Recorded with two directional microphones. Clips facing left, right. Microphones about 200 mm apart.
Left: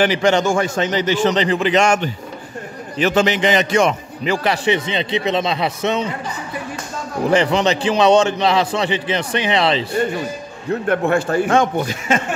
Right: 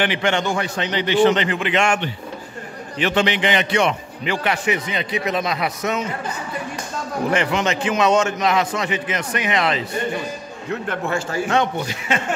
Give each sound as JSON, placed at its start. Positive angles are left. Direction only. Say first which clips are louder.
{"t": 0.0, "sound": "a man's voice", "louder": "left 5 dB", "side_deg": 40}
{"t": 7.2, "sound": "a man's voice", "louder": "left 5 dB", "side_deg": 35}
{"t": 10.9, "sound": "a man's voice", "louder": "left 9 dB", "side_deg": 55}